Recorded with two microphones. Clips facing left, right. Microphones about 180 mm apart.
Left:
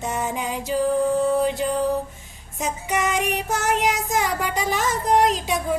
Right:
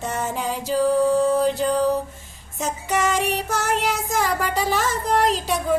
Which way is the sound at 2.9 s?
15° left (ahead or behind).